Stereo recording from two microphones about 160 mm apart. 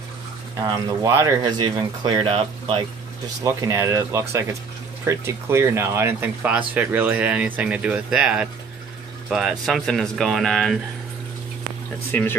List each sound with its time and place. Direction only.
0.7 s speech: 25° right (ahead or behind)
3.4 s speech: 20° right (ahead or behind); by 10.8 s centre (ahead or behind)
12.1 s speech: 10° left (ahead or behind)